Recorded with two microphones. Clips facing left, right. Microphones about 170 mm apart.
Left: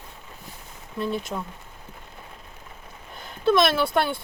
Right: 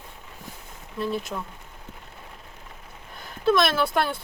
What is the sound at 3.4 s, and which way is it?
Speech, centre (ahead or behind).